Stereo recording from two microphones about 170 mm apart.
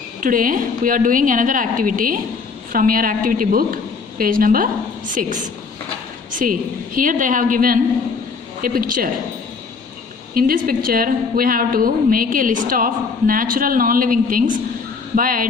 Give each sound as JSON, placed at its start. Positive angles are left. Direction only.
{"t": 0.2, "sound": "a woman's voice", "side_deg": -55}
{"t": 10.3, "sound": "a woman's voice", "side_deg": -55}